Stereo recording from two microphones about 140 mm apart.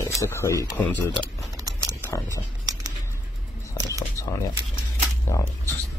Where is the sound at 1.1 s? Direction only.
25° right (ahead or behind).